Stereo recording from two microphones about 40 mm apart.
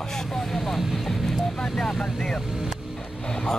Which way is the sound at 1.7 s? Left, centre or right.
Centre.